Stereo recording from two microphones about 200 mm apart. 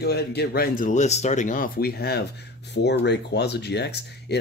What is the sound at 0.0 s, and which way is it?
Speech, 55° left (ahead or behind).